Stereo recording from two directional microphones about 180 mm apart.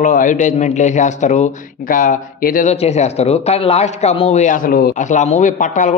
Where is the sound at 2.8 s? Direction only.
35° left (ahead or behind).